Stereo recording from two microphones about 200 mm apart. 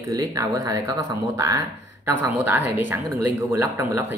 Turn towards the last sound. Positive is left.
turn(degrees=-10)  # may be behind; listen again after turning